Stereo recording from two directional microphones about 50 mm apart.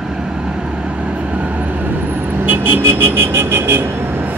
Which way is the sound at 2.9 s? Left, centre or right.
Right.